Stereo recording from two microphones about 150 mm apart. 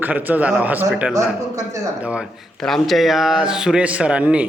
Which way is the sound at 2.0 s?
10° right (ahead or behind).